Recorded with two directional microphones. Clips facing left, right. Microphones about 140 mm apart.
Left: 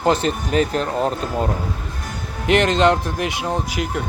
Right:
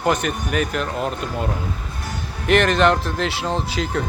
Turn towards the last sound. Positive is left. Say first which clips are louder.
# even
turn(degrees=10)  # may be behind; listen again after turning